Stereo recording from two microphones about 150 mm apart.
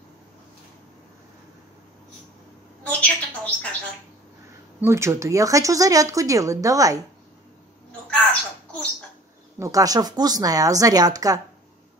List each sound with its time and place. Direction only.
2.8 s a woman's voice: 10° left (ahead or behind)
4.7 s speech: 20° right (ahead or behind)
8.1 s crow: 5° left (ahead or behind)
9.6 s speech: 25° right (ahead or behind)